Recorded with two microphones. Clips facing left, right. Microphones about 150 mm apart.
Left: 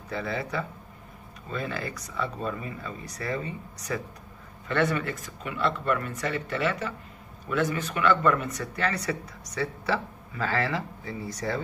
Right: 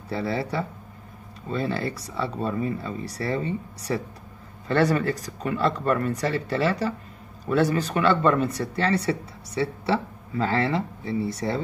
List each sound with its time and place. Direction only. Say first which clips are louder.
0.1 s speech: right 4 dB; 35° right (ahead or behind)